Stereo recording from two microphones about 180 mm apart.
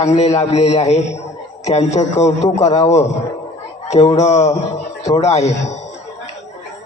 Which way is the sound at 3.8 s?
35° left (ahead or behind).